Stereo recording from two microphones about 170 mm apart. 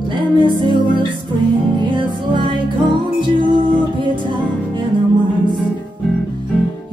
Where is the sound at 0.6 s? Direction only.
30° right (ahead or behind).